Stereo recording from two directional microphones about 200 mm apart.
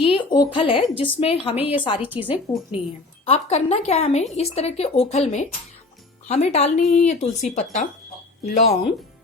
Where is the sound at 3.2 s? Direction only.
30° left (ahead or behind).